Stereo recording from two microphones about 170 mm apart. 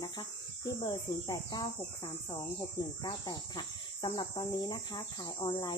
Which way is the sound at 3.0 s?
25° left (ahead or behind).